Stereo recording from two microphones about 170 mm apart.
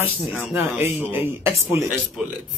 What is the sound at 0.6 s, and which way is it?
A man's voice, 15° right (ahead or behind).